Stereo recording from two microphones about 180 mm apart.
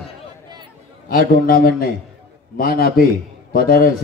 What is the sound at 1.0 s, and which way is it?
A man's voice, 55° left (ahead or behind).